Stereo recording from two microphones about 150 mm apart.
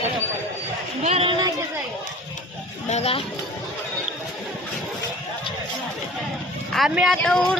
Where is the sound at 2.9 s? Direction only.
45° left (ahead or behind).